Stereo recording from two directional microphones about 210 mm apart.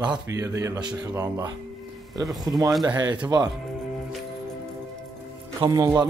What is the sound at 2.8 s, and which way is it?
Speech, 20° right (ahead or behind).